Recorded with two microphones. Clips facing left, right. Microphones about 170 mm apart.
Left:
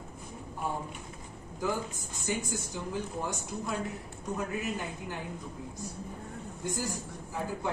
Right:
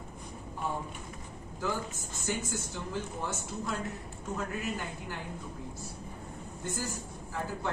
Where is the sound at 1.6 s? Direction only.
15° left (ahead or behind).